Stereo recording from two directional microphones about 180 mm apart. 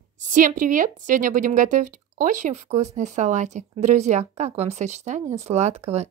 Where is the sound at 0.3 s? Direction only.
45° right (ahead or behind).